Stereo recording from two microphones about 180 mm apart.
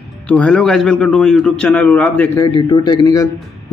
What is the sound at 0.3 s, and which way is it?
A man's voice, 5° left (ahead or behind).